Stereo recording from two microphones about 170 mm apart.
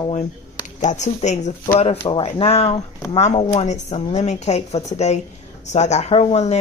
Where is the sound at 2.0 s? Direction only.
30° left (ahead or behind).